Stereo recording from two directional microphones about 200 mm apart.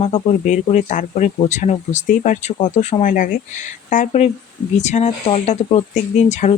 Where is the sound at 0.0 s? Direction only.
35° left (ahead or behind).